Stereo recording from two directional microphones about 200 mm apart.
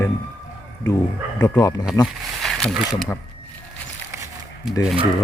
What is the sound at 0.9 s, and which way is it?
Speech, 15° left (ahead or behind).